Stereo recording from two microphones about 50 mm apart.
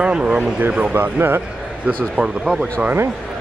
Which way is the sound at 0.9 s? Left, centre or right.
Right.